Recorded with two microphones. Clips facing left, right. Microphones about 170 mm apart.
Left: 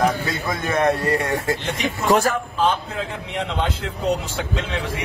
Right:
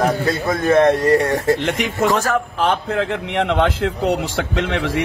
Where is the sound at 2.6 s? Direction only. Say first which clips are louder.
Right 2 dB; 75° right (ahead or behind).